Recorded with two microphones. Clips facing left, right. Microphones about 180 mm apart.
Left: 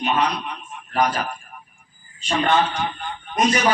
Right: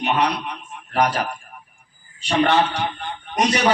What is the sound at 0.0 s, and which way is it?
A man's voice, 65° right (ahead or behind).